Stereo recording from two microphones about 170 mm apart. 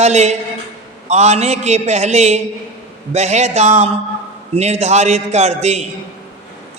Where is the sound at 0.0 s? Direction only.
40° right (ahead or behind).